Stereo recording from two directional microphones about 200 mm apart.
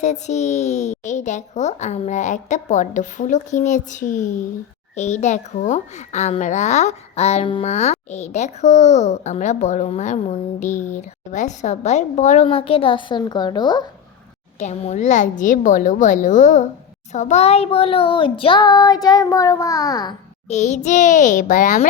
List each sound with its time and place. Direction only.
0.0 s a child's voice: 35° left (ahead or behind)
10.9 s child singing: 35° left (ahead or behind); by 13.8 s 20° left (ahead or behind)
14.6 s a child's voice: 35° left (ahead or behind)
17.1 s child singing: 35° left (ahead or behind); by 20.1 s 20° left (ahead or behind)
20.5 s a child's voice: 35° left (ahead or behind)